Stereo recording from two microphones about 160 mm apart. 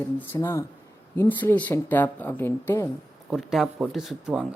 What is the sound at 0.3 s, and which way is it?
Speech, 15° left (ahead or behind).